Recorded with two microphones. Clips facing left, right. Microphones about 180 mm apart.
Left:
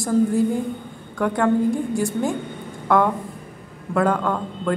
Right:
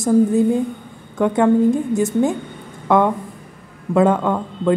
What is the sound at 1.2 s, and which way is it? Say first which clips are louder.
A woman's voice: right 5 dB; 20° right (ahead or behind).